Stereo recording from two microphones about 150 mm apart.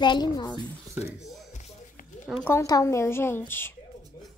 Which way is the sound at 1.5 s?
55° left (ahead or behind).